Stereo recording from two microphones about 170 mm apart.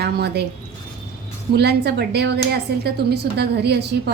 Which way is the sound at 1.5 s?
75° right (ahead or behind).